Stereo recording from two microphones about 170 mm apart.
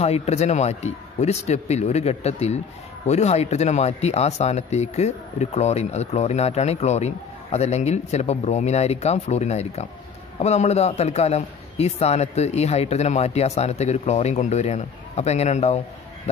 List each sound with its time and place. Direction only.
0.0 s a man's voice: 40° left (ahead or behind)